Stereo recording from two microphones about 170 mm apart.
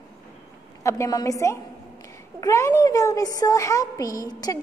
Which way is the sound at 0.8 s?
20° left (ahead or behind).